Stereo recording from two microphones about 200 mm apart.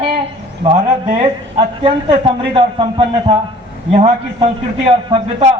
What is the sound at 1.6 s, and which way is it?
A man's voice, 25° right (ahead or behind).